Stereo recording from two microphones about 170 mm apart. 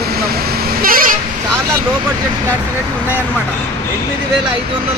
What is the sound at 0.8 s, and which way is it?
Vehicle, 55° right (ahead or behind).